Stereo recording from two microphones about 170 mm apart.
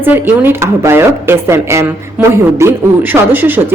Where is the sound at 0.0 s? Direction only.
10° right (ahead or behind).